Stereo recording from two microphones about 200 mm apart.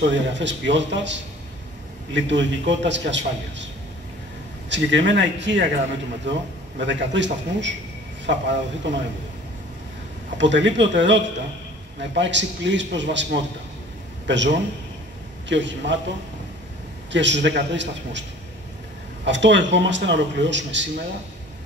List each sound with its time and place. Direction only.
0.0 s a man's voice: 65° right (ahead or behind)
4.6 s a man's voice: 65° right (ahead or behind)
10.3 s a man's voice: 65° right (ahead or behind)
17.1 s a man's voice: 65° right (ahead or behind)
19.2 s a man's voice: 65° right (ahead or behind)